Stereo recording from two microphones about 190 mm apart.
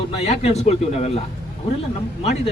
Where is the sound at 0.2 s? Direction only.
35° left (ahead or behind).